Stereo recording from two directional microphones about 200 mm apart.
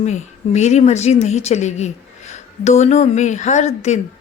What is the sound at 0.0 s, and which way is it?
Speech, 35° left (ahead or behind).